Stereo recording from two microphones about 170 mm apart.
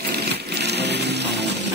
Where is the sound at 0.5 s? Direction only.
80° right.